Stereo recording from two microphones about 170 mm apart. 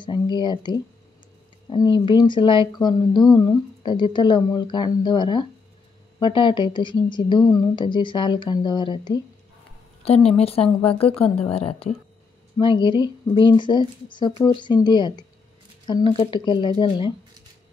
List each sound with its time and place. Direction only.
0.0 s speech: 25° left (ahead or behind)